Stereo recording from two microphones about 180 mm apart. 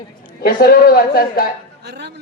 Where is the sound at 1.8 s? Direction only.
70° right (ahead or behind).